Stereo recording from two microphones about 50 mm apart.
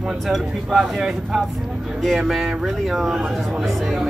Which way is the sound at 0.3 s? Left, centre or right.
Centre.